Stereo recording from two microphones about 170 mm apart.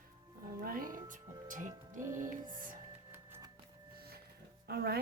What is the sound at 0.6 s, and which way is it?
Music, 55° right (ahead or behind).